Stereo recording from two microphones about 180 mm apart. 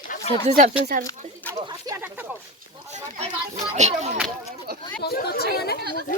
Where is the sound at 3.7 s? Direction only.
40° right (ahead or behind).